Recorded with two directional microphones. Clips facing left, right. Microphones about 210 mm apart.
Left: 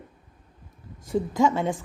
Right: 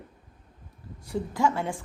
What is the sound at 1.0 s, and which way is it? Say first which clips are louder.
Speech: left 4 dB; 20° left (ahead or behind).